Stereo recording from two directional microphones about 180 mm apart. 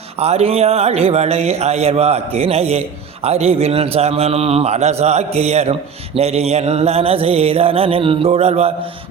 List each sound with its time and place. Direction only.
0.2 s speech: 35° right (ahead or behind)